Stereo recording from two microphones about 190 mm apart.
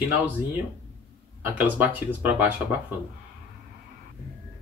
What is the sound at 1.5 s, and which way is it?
Speech, 10° right (ahead or behind).